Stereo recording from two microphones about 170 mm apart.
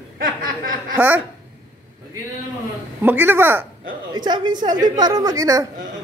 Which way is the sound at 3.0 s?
10° right (ahead or behind).